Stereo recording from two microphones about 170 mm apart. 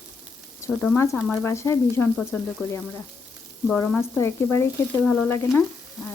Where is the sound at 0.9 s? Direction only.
15° left (ahead or behind).